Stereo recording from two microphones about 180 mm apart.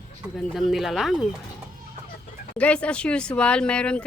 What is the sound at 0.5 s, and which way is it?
Speech, centre (ahead or behind).